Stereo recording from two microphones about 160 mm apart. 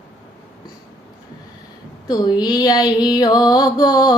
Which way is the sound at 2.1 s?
25° left (ahead or behind).